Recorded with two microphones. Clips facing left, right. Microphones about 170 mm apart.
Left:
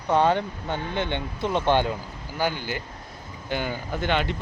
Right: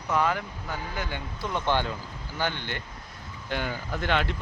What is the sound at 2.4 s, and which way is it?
Speech, 10° left (ahead or behind).